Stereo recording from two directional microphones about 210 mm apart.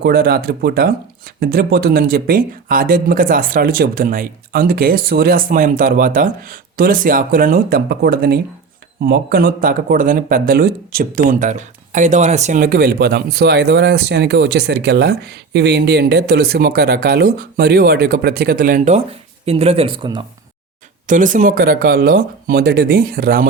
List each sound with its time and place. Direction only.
0.0 s speech: 45° right (ahead or behind); by 20.2 s 25° right (ahead or behind)
21.1 s speech: 35° right (ahead or behind)